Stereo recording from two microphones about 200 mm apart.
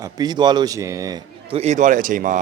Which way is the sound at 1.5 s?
35° right (ahead or behind).